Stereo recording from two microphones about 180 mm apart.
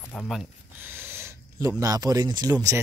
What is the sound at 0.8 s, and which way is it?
Speech, 10° right (ahead or behind).